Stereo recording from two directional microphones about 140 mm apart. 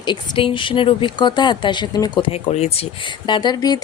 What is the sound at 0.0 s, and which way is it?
Speech, 35° left (ahead or behind).